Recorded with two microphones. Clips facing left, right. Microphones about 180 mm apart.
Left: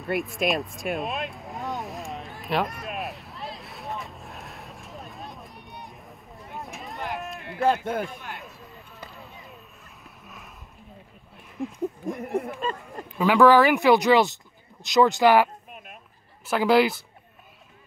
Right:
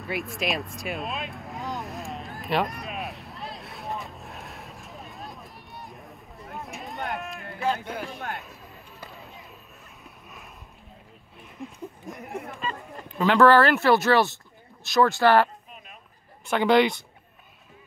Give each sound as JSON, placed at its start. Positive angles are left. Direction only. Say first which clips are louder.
{"t": 0.0, "sound": "vehicle", "louder": "left 4 dB", "side_deg": 0}
{"t": 7.6, "sound": "speech", "louder": "left 5 dB", "side_deg": 55}
{"t": 10.2, "sound": "a sound", "louder": "left 1 dB", "side_deg": 0}
{"t": 12.1, "sound": "speech", "louder": "left 6 dB", "side_deg": 55}
{"t": 13.2, "sound": "speech", "louder": "left 1 dB", "side_deg": 10}